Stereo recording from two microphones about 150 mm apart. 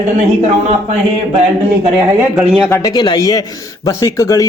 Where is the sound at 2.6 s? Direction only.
15° left (ahead or behind).